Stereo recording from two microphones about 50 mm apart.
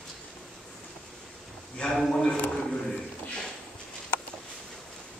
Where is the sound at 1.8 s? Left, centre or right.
Centre.